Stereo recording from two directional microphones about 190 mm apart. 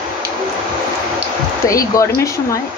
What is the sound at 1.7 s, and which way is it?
Speech, 15° left (ahead or behind).